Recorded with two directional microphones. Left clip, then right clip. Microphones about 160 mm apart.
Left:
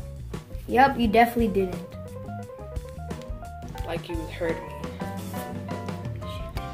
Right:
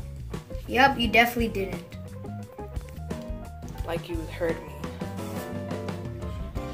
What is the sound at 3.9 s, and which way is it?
Music, centre (ahead or behind).